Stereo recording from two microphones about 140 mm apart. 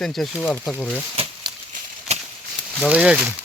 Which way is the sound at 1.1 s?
45° right (ahead or behind).